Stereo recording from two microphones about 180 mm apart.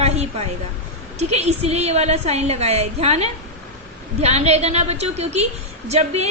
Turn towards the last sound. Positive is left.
turn(degrees=-35)  # may be behind; listen again after turning